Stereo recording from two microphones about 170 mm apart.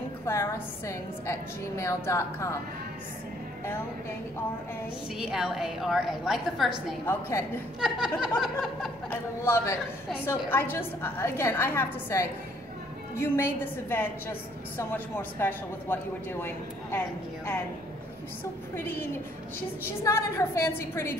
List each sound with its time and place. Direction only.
0.2 s a woman's voice: 15° left (ahead or behind)
5.2 s a woman's voice: 5° right (ahead or behind)
7.1 s a woman's voice: 15° left (ahead or behind)
7.8 s a woman's voice: centre (ahead or behind)
9.4 s a woman's voice: 15° left (ahead or behind)
18.4 s a woman's voice: 10° left (ahead or behind)